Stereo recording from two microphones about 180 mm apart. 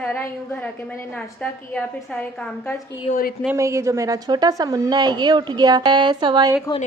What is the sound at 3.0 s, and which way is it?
Speech, 50° left (ahead or behind).